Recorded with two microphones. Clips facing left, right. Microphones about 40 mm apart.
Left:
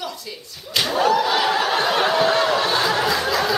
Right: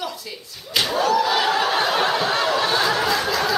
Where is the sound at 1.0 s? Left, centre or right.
Centre.